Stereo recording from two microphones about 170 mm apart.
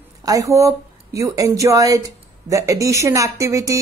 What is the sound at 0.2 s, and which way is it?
A woman's voice, 20° right (ahead or behind).